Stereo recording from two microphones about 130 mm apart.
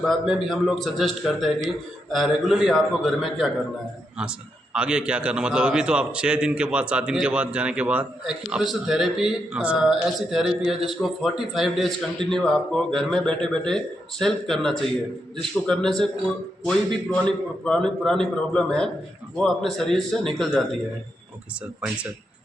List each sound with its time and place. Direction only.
0.0 s a man's voice: centre (ahead or behind)